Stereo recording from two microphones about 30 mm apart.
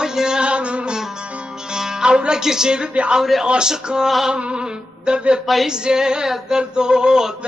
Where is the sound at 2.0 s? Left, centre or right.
Right.